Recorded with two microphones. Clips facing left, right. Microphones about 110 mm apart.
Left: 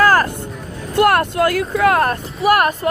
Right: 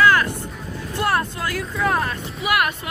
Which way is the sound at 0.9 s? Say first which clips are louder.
Left 9 dB; 70° left (ahead or behind).